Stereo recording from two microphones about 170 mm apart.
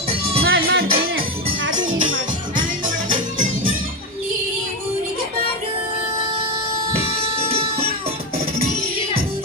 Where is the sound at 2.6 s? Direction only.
50° right (ahead or behind).